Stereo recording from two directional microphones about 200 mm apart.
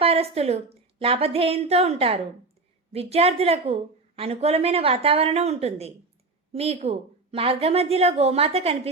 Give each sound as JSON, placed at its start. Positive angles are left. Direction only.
{"t": 0.0, "sound": "a woman's voice", "side_deg": -30}